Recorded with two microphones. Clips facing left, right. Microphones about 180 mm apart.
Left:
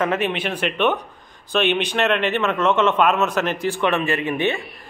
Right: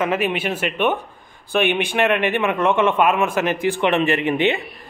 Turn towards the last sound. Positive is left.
turn(degrees=-20)  # may be behind; listen again after turning